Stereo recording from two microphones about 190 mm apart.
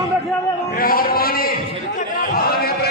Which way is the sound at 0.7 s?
50° left (ahead or behind).